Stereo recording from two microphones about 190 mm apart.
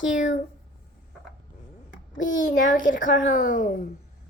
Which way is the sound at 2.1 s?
45° left (ahead or behind).